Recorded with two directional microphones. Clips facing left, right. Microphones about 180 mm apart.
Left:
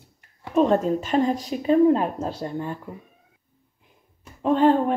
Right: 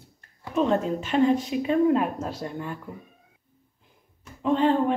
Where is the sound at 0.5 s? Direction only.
40° left (ahead or behind).